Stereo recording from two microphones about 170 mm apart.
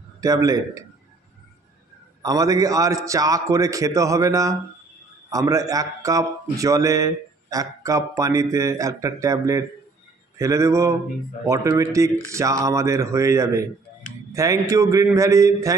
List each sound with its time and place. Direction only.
0.2 s speech: 20° right (ahead or behind)
2.2 s speech: 20° right (ahead or behind)